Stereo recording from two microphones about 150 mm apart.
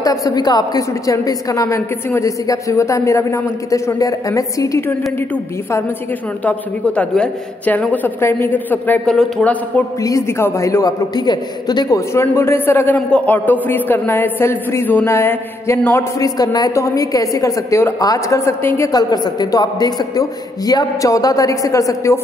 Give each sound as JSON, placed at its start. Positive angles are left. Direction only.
{"t": 0.0, "sound": "a man's voice", "side_deg": 25}
{"t": 7.0, "sound": "a woman's voice", "side_deg": 10}
{"t": 10.0, "sound": "a man's voice", "side_deg": 20}